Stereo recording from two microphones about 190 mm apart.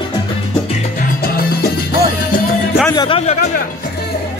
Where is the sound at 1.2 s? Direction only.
55° left (ahead or behind).